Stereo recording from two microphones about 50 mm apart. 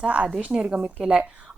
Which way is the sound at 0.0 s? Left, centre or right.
Right.